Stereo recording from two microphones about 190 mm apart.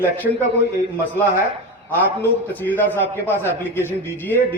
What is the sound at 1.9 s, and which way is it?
A man's voice, 10° left (ahead or behind).